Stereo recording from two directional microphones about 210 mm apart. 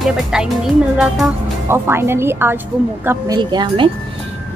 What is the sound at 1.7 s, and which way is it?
A woman's voice, 10° right (ahead or behind).